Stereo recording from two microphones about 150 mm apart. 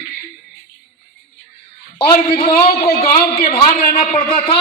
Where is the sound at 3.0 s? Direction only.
30° left (ahead or behind).